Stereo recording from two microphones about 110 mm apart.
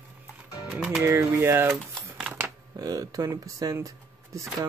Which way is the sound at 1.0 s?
20° right (ahead or behind).